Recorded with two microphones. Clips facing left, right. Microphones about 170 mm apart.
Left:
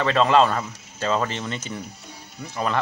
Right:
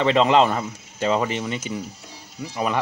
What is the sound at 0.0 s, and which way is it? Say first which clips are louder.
Speech: right 1 dB; 20° right (ahead or behind).